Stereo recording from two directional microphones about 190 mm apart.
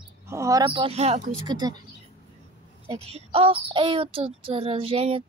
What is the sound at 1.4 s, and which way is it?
Speech, 20° right (ahead or behind).